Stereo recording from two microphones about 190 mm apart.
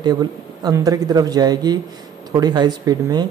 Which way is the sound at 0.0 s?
20° right (ahead or behind).